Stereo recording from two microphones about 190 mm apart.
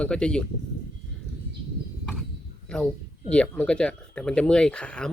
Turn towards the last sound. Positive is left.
turn(degrees=5)  # may be behind; listen again after turning